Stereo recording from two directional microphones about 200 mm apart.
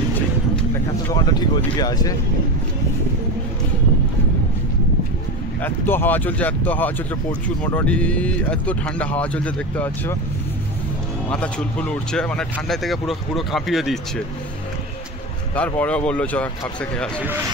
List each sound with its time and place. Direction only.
1.0 s speech: 20° left (ahead or behind)
5.6 s speech: 10° left (ahead or behind)
11.2 s speech: 5° left (ahead or behind)
15.5 s speech: 5° left (ahead or behind)